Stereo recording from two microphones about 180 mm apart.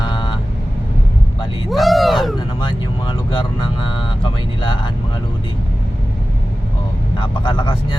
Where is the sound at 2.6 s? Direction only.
25° left (ahead or behind).